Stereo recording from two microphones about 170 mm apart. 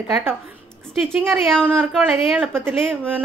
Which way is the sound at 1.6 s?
10° right (ahead or behind).